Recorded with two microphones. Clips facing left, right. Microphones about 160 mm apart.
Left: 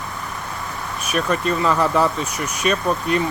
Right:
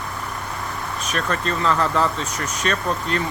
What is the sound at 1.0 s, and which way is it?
Speech, 10° left (ahead or behind).